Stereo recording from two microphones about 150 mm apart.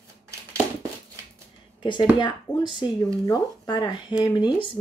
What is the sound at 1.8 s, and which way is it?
A woman's voice, 30° left (ahead or behind).